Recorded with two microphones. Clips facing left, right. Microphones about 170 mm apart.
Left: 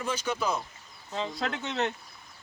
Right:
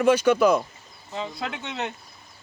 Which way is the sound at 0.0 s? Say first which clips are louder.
Right 12 dB; 65° right (ahead or behind).